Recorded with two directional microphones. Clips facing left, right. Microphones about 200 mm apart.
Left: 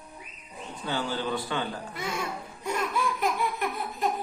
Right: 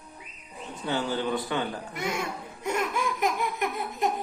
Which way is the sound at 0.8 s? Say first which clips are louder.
Right 2 dB; 20° right (ahead or behind).